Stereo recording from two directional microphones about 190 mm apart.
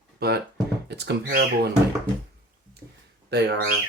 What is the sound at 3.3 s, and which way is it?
Speech, 60° right (ahead or behind).